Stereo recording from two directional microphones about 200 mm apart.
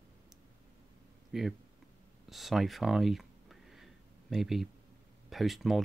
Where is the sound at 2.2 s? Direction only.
Centre (ahead or behind).